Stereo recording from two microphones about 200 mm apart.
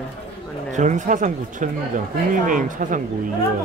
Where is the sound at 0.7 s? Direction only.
35° right (ahead or behind).